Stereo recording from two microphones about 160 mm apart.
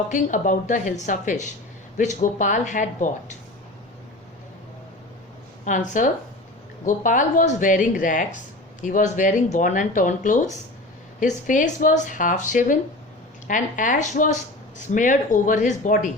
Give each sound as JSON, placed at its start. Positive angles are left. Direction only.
{"t": 0.1, "sound": "speech", "side_deg": 50}
{"t": 5.6, "sound": "speech", "side_deg": 50}